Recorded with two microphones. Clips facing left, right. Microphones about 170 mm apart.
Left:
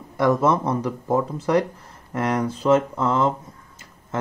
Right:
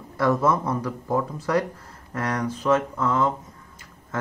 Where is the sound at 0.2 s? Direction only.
20° left (ahead or behind).